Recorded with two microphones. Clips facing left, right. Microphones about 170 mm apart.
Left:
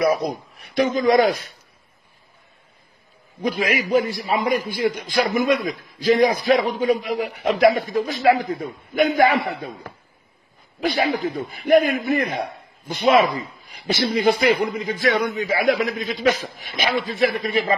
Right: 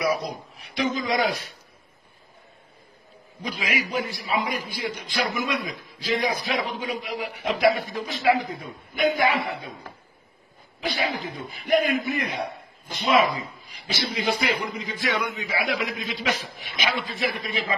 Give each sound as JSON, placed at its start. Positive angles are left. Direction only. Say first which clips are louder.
{"t": 0.0, "sound": "a man's voice", "louder": "left 6 dB", "side_deg": 50}
{"t": 3.4, "sound": "a man's voice", "louder": "left 7 dB", "side_deg": 50}
{"t": 10.8, "sound": "a man's voice", "louder": "left 7 dB", "side_deg": 50}